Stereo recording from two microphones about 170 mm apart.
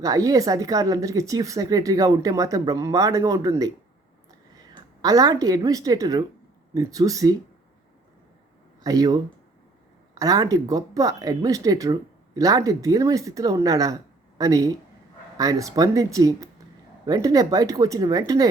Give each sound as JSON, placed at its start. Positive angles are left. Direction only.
{"t": 0.0, "sound": "speech", "side_deg": -20}
{"t": 4.7, "sound": "a woman's voice", "side_deg": -20}
{"t": 8.8, "sound": "speech", "side_deg": -20}